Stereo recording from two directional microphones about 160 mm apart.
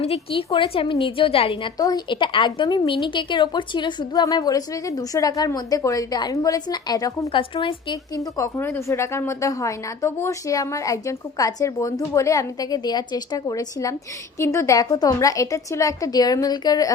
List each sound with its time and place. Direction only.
0.0 s a woman's voice: 35° left (ahead or behind)